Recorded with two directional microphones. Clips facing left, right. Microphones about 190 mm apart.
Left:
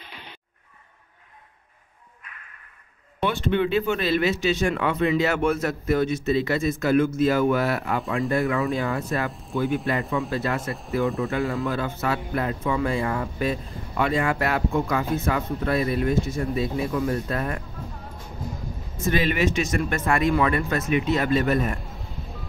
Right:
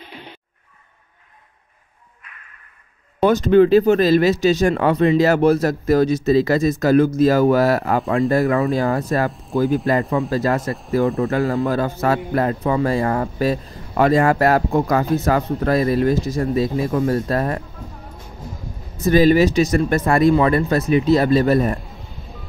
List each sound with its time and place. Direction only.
3.2 s a man's voice: 40° right (ahead or behind)
9.3 s speech: centre (ahead or behind)
9.8 s a man's voice: 35° right (ahead or behind)
10.7 s speech: centre (ahead or behind)
11.2 s a man's voice: 40° right (ahead or behind)
18.9 s a man's voice: 40° right (ahead or behind)